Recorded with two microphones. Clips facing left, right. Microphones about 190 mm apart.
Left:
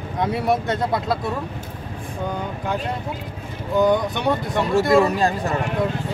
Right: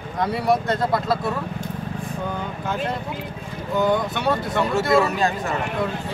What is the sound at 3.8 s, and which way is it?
Speech, 15° left (ahead or behind).